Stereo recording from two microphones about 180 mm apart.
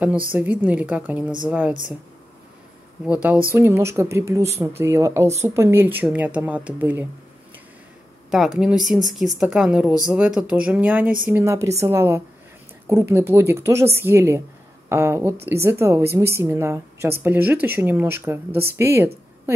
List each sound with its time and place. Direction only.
0.3 s a woman's voice: 10° right (ahead or behind)
3.1 s a woman's voice: 10° right (ahead or behind)
8.3 s a woman's voice: 5° right (ahead or behind)